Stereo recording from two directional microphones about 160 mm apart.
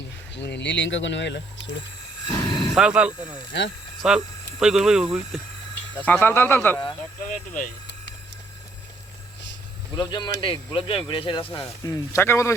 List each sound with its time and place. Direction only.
0.3 s speech: 90° left
2.3 s speech: 20° left (ahead or behind)
2.7 s speech: 5° right (ahead or behind)
3.1 s speech: 45° right (ahead or behind)
4.0 s speech: 5° right (ahead or behind)
6.1 s speech: 15° left (ahead or behind)
7.3 s speech: 55° left (ahead or behind)
9.9 s speech: 25° left (ahead or behind)
11.6 s speech: 15° left (ahead or behind)